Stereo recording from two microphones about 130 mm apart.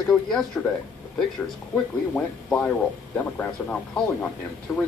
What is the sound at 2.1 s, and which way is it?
Speech, 5° left (ahead or behind).